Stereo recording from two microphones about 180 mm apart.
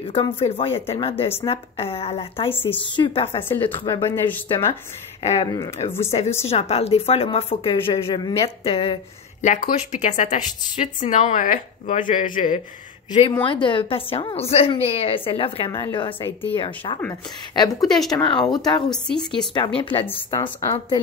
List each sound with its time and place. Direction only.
0.0 s a woman's voice: 30° left (ahead or behind)
2.5 s speech: 10° left (ahead or behind)
5.2 s a woman's voice: 35° left (ahead or behind)
5.5 s speech: 20° left (ahead or behind)
6.0 s a woman's voice: 35° left (ahead or behind)
13.5 s a woman's voice: 30° left (ahead or behind)
16.2 s speech: 10° left (ahead or behind)
16.5 s speech: 30° left (ahead or behind)
17.8 s speech: centre (ahead or behind)
18.1 s speech: 25° left (ahead or behind)
18.9 s speech: 5° left (ahead or behind)
19.8 s speech: 30° left (ahead or behind)
20.3 s speech: 15° left (ahead or behind)